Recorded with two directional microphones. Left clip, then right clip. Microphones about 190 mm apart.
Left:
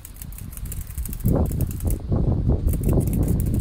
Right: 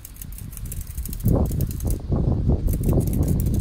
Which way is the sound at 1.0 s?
25° right (ahead or behind).